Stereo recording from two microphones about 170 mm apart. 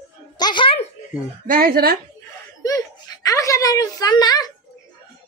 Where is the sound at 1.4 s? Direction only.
60° right (ahead or behind).